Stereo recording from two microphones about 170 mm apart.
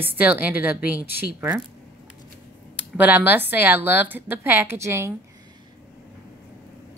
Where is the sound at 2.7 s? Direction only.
10° right (ahead or behind).